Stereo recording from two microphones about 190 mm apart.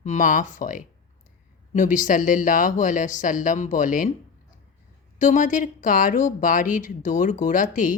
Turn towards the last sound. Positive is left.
turn(degrees=45)  # may be behind; listen again after turning